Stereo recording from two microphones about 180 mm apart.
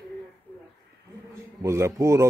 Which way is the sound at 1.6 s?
15° right (ahead or behind).